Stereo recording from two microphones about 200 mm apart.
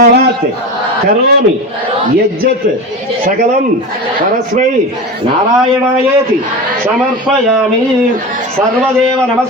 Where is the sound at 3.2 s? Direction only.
40° right (ahead or behind).